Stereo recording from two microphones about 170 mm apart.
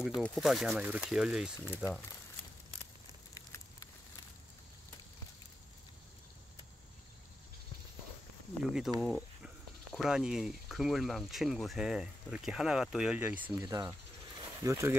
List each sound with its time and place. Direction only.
0.2 s speech: centre (ahead or behind)
8.5 s speech: centre (ahead or behind)
9.0 s cricket: centre (ahead or behind)
9.9 s speech: 5° right (ahead or behind)
13.6 s speech: 20° right (ahead or behind)
14.4 s a sound: 20° right (ahead or behind)